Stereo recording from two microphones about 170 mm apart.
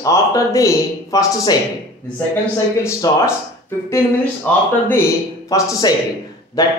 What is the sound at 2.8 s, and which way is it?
Speech, 15° left (ahead or behind).